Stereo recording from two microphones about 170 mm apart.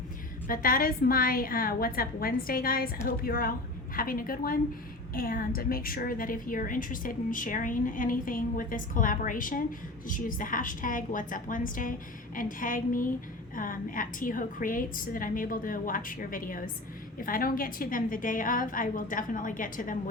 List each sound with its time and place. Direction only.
0.4 s a woman's voice: 55° left (ahead or behind)